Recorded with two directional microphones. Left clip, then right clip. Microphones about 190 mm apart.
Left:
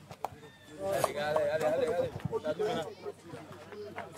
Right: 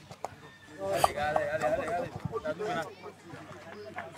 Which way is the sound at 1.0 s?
55° left (ahead or behind).